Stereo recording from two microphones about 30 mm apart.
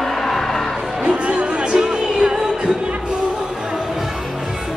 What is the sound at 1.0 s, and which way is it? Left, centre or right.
Music, right.